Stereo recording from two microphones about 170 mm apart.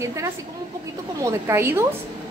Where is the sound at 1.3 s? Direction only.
15° right (ahead or behind).